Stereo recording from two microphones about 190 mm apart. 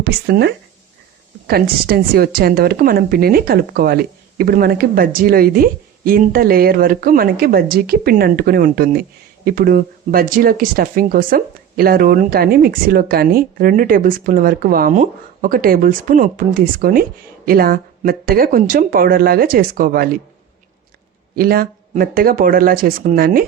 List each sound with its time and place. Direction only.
0.0 s a woman's voice: 60° right (ahead or behind)
21.3 s a woman's voice: 50° right (ahead or behind)